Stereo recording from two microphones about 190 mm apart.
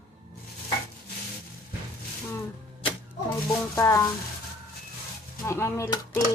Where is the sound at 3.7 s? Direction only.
15° left (ahead or behind).